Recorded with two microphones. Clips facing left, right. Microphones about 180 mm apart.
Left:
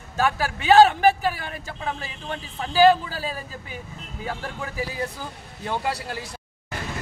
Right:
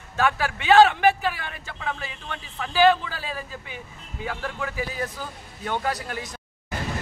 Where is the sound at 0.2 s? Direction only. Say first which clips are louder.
Even; 40° left (ahead or behind).